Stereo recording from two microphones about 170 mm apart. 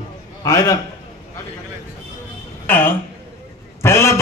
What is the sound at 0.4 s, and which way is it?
Speech, 20° left (ahead or behind).